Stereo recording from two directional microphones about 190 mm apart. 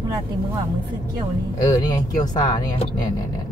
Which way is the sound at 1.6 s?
20° left (ahead or behind).